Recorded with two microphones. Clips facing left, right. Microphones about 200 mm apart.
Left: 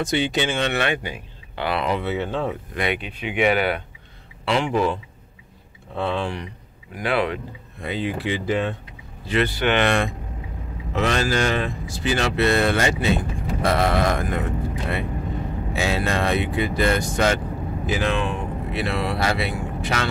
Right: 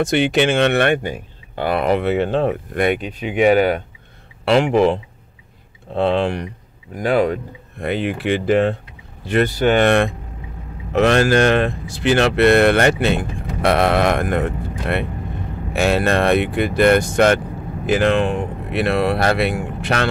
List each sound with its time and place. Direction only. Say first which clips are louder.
0.1 s speech: right 6 dB; 70° right (ahead or behind); by 3.8 s 40° right (ahead or behind)
4.5 s speech: right 7 dB; 65° right (ahead or behind)
5.9 s speech: right 7 dB; 65° right (ahead or behind)
7.0 s speech: right 6 dB; 45° right (ahead or behind)
7.8 s speech: right 5 dB; 65° right (ahead or behind)
9.3 s speech: right 5 dB; 45° right (ahead or behind)
10.9 s speech: right 8 dB; 60° right (ahead or behind)